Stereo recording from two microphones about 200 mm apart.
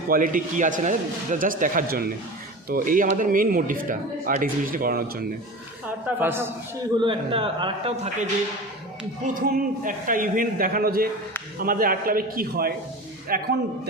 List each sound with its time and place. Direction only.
0.1 s speech: 45° right (ahead or behind)
6.1 s a man's voice: 10° right (ahead or behind)
6.9 s a man's voice: 25° right (ahead or behind)
9.2 s speech: 45° right (ahead or behind)